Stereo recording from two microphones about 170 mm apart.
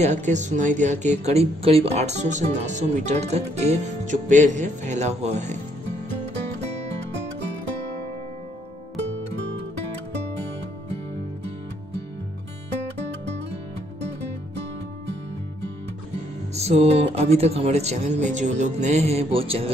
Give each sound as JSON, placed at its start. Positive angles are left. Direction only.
{"t": 0.1, "sound": "speech", "side_deg": -45}
{"t": 16.5, "sound": "music", "side_deg": -40}